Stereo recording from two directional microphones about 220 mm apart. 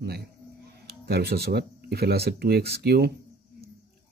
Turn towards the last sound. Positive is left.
turn(degrees=-45)  # may be behind; listen again after turning